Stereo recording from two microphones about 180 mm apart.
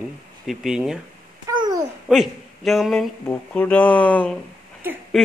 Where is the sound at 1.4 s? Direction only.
20° right (ahead or behind).